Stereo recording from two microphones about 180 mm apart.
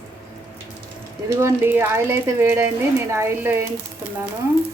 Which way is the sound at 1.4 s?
15° right (ahead or behind).